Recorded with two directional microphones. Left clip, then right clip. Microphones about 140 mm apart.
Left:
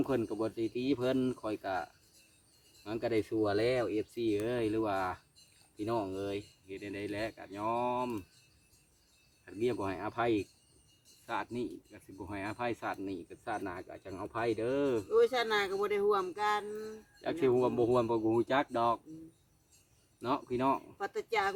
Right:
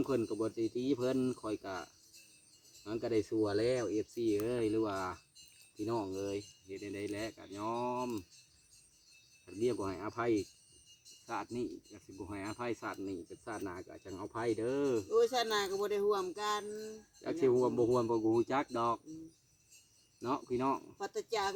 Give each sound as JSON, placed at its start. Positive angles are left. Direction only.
{"t": 0.0, "sound": "speech", "side_deg": 25}
{"t": 9.5, "sound": "speech", "side_deg": 20}
{"t": 15.1, "sound": "speech", "side_deg": -25}
{"t": 17.2, "sound": "speech", "side_deg": 20}
{"t": 20.2, "sound": "speech", "side_deg": 20}
{"t": 21.0, "sound": "speech", "side_deg": -20}